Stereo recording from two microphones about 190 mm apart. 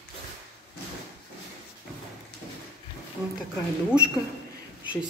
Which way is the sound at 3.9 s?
5° right (ahead or behind).